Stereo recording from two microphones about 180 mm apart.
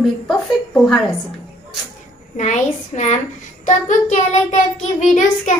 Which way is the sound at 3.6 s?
45° left (ahead or behind).